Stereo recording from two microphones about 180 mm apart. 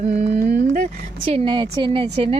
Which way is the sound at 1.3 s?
25° right (ahead or behind).